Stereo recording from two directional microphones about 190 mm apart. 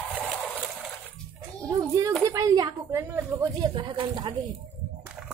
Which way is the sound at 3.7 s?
25° right (ahead or behind).